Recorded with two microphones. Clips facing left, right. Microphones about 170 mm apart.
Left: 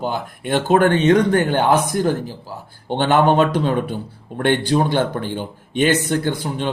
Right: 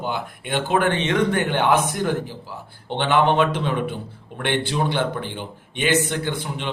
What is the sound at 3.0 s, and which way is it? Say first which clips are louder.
A man's voice: left 3 dB; 45° left (ahead or behind).